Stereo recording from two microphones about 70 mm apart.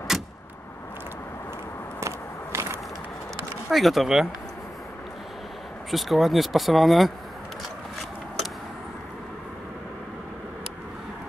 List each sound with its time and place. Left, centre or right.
0.1 s vehicle: centre
2.0 s a sound: right
3.7 s speech: centre
5.9 s speech: centre